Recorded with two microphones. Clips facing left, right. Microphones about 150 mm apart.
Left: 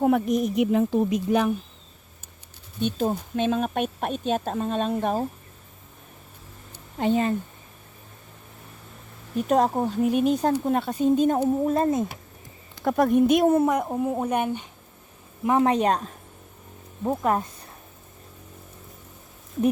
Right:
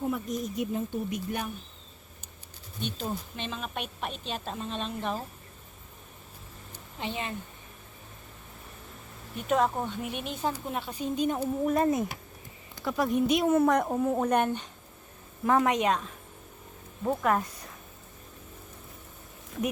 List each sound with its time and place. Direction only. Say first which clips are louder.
0.0 s speech: left 10 dB; 75° left (ahead or behind)
2.8 s speech: left 9 dB; 45° left (ahead or behind)
7.0 s speech: left 12 dB; 45° left (ahead or behind)
9.5 s speech: left 5 dB; 35° left (ahead or behind)
11.6 s speech: left 3 dB; 25° left (ahead or behind)
12.8 s speech: left 7 dB; 50° left (ahead or behind)
13.7 s a woman's voice: left 1 dB; 5° left (ahead or behind)
15.6 s speech: left 5 dB; 35° left (ahead or behind)
17.0 s speech: left 3 dB; 20° left (ahead or behind)